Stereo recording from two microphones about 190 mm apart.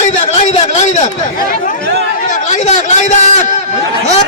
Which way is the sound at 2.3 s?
40° left (ahead or behind).